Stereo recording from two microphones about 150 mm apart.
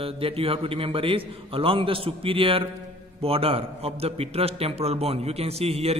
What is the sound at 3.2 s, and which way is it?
A man's voice, 40° right (ahead or behind).